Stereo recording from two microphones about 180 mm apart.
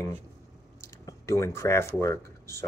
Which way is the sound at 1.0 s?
15° left (ahead or behind).